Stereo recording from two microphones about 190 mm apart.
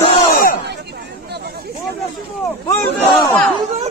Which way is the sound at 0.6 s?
60° right (ahead or behind).